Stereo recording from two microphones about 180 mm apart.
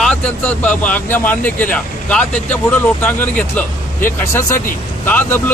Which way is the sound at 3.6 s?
10° left (ahead or behind).